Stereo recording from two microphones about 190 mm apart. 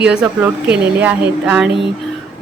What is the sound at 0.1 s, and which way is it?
Speech, 5° right (ahead or behind).